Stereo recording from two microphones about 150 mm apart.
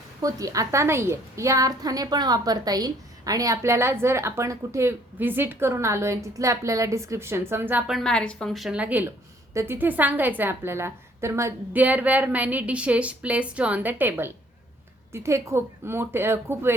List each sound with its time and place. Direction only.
0.2 s a woman's voice: 25° right (ahead or behind)